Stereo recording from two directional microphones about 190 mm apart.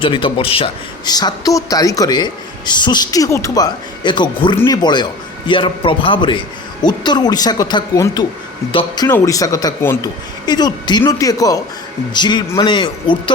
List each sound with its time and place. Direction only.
0.0 s a man's voice: 25° left (ahead or behind)